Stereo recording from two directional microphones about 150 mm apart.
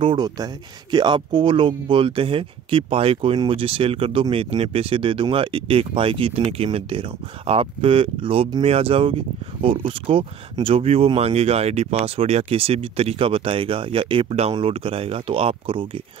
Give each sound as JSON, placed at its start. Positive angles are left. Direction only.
{"t": 0.0, "sound": "speech", "side_deg": -30}